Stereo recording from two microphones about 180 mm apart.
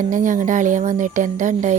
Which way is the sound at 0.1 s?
45° right (ahead or behind).